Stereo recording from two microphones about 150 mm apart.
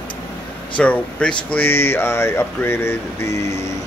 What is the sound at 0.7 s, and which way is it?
Speech, 10° left (ahead or behind).